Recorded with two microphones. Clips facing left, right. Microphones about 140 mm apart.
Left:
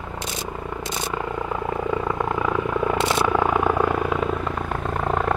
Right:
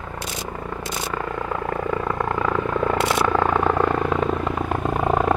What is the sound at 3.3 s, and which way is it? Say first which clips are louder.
Vehicle: right 1 dB; 10° left (ahead or behind).